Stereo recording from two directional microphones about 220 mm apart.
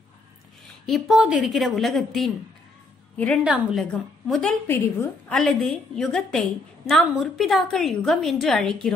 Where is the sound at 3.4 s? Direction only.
Centre (ahead or behind).